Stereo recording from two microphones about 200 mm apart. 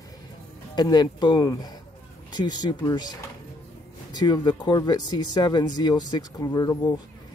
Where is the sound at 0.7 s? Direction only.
20° left (ahead or behind).